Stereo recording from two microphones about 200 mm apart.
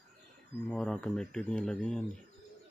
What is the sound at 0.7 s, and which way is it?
Speech, 5° left (ahead or behind).